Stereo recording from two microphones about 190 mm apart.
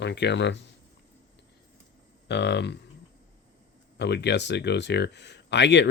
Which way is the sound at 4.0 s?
60° left (ahead or behind).